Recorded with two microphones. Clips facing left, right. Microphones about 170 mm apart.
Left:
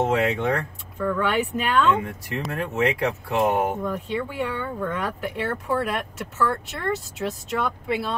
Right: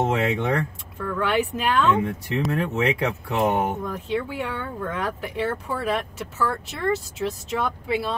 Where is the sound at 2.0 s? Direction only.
20° right (ahead or behind).